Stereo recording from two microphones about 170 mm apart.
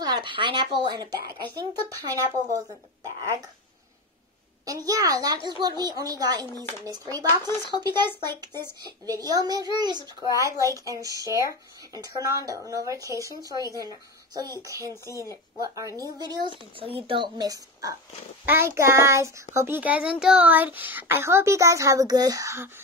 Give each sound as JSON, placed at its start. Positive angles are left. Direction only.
{"t": 0.0, "sound": "speech", "side_deg": -25}
{"t": 4.6, "sound": "a child's voice", "side_deg": -20}